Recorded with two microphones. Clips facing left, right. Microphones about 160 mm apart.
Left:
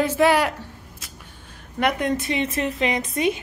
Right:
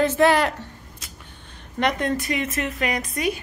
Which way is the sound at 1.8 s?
10° left (ahead or behind).